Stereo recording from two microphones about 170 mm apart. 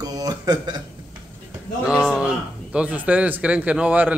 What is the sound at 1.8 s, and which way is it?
Speech, 5° right (ahead or behind).